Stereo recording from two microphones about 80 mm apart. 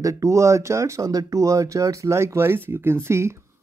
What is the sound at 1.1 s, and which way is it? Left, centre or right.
Speech, right.